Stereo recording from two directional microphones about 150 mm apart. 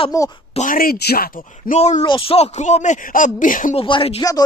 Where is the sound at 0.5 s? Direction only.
65° left (ahead or behind); by 1.7 s 90° left.